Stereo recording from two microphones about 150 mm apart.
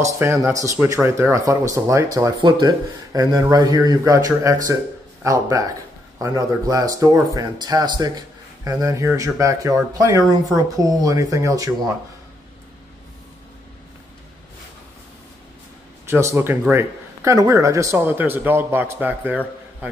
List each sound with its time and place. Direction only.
0.0 s speech: 15° right (ahead or behind)
16.1 s speech: 20° right (ahead or behind)